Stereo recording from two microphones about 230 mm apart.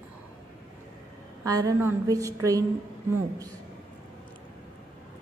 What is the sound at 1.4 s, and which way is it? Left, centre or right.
A woman's voice, centre.